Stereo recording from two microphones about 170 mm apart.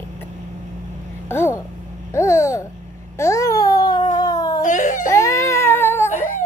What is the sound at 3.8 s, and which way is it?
Cat, 25° left (ahead or behind).